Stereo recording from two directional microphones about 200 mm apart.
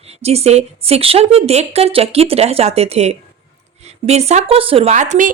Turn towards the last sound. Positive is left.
turn(degrees=-40)  # may be behind; listen again after turning